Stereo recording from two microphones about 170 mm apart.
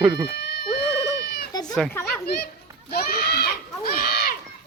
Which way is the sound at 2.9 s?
65° left (ahead or behind).